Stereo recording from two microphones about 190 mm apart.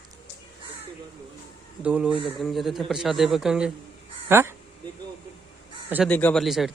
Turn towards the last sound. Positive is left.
turn(degrees=0)  # may be behind; listen again after turning